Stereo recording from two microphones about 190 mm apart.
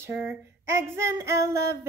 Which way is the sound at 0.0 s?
10° right (ahead or behind).